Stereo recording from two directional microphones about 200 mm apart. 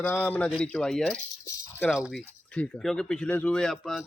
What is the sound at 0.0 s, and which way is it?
Speech, 10° left (ahead or behind).